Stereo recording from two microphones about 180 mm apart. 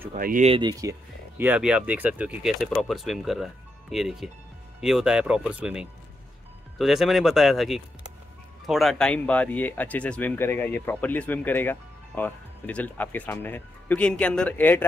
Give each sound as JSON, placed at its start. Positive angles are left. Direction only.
{"t": 0.1, "sound": "speech", "side_deg": -45}
{"t": 0.5, "sound": "speech", "side_deg": -25}
{"t": 1.4, "sound": "speech", "side_deg": -5}